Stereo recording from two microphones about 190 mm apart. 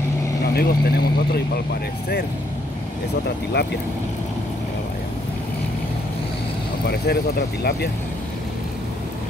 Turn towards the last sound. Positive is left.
turn(degrees=55)  # may be behind; listen again after turning